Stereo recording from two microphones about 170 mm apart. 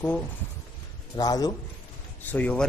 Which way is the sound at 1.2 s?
20° left (ahead or behind).